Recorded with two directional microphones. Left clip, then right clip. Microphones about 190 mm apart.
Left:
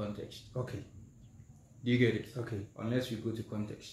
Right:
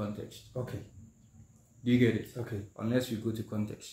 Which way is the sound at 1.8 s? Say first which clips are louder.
Right 2 dB; 15° right (ahead or behind).